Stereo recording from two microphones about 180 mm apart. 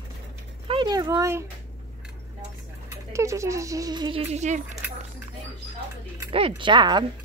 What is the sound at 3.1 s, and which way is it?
Speech, 15° right (ahead or behind).